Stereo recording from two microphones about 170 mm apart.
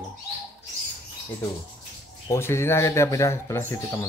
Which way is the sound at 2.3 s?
15° left (ahead or behind).